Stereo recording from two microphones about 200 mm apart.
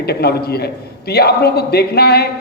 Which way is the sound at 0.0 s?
50° left (ahead or behind).